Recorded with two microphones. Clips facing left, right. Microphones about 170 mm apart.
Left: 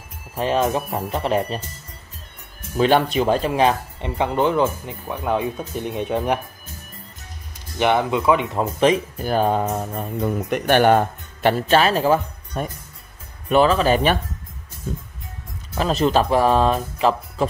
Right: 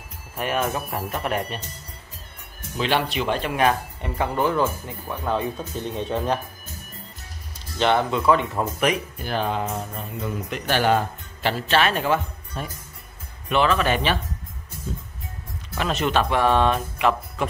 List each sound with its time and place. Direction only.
0.4 s speech: 25° left (ahead or behind)
2.8 s speech: 45° left (ahead or behind); by 6.4 s 15° left (ahead or behind)
7.5 s speech: 15° left (ahead or behind)
9.2 s speech: 45° left (ahead or behind)
13.5 s speech: 35° left (ahead or behind)
14.9 s music: 60° left (ahead or behind)
15.7 s speech: 35° left (ahead or behind)